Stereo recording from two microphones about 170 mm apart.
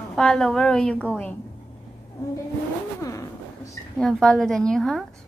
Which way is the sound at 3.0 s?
20° left (ahead or behind).